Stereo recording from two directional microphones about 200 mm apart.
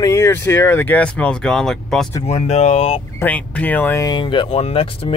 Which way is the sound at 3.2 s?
10° left (ahead or behind).